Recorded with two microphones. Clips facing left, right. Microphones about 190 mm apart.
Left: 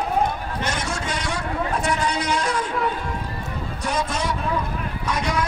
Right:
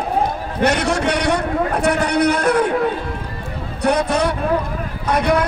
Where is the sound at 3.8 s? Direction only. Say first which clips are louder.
Right 9 dB; 65° right (ahead or behind).